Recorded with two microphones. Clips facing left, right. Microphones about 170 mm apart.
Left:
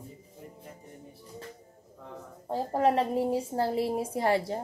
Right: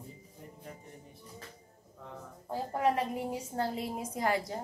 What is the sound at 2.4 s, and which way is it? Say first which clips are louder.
A woman's voice: left 4 dB; 35° left (ahead or behind).